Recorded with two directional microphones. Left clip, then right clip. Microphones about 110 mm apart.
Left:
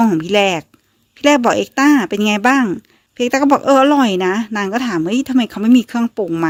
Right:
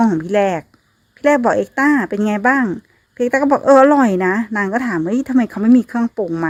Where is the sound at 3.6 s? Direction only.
Centre (ahead or behind).